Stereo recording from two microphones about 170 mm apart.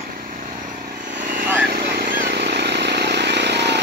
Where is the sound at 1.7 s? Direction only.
70° right (ahead or behind).